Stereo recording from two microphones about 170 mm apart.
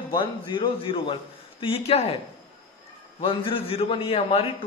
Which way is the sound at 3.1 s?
30° left (ahead or behind).